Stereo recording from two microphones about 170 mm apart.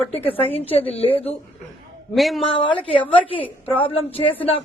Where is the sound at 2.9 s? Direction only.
30° left (ahead or behind).